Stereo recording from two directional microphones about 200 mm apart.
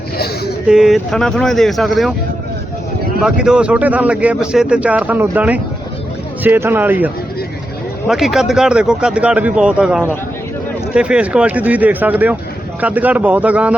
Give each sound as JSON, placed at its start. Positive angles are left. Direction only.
{"t": 0.7, "sound": "speech", "side_deg": 0}
{"t": 3.2, "sound": "speech", "side_deg": -5}